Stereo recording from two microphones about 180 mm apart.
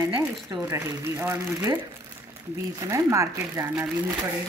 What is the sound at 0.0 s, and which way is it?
Speech, 15° right (ahead or behind).